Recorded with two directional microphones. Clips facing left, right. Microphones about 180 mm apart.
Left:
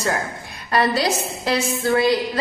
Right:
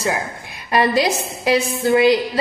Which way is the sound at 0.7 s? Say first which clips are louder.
Right 2 dB; 15° right (ahead or behind).